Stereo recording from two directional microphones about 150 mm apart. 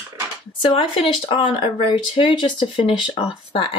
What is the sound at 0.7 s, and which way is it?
Speech, 35° left (ahead or behind).